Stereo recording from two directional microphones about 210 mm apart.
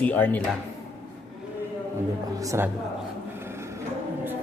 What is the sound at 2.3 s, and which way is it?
Speech, 15° right (ahead or behind).